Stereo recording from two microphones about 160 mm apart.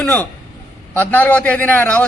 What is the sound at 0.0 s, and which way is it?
A man's voice, 10° left (ahead or behind).